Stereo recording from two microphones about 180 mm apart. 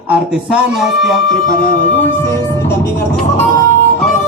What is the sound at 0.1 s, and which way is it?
Speech, 5° right (ahead or behind).